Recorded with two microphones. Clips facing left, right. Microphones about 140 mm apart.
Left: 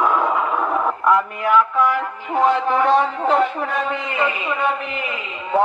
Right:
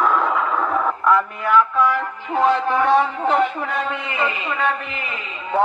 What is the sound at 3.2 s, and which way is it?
A man's voice, 5° left (ahead or behind).